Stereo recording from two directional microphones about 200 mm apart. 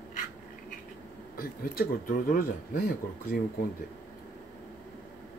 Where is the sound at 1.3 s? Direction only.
45° left (ahead or behind).